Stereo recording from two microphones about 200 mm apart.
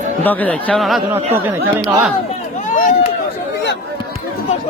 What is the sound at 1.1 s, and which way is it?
Speech, 10° right (ahead or behind).